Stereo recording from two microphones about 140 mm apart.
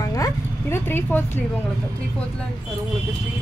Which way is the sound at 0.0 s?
25° left (ahead or behind).